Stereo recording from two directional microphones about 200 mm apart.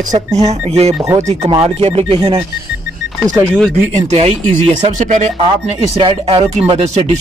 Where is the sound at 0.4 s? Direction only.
30° right (ahead or behind).